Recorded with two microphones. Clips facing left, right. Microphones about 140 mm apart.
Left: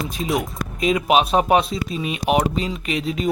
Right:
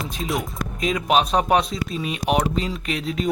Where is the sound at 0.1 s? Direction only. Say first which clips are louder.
Left 3 dB; centre (ahead or behind).